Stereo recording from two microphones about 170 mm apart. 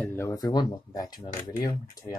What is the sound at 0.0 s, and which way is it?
Speech, 15° left (ahead or behind).